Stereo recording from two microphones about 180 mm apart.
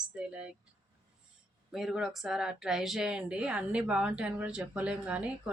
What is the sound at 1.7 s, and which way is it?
Speech, centre (ahead or behind).